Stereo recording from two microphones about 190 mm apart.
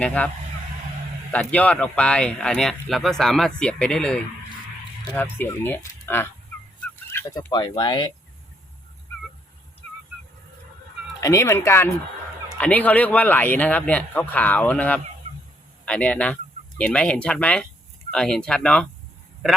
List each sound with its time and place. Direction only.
0.0 s speech: 5° left (ahead or behind)
1.3 s speech: 5° left (ahead or behind); by 8.1 s 25° left (ahead or behind)
11.2 s speech: 15° left (ahead or behind)